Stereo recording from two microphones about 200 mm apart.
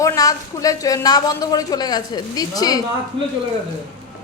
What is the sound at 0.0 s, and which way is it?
A woman's voice, 15° left (ahead or behind).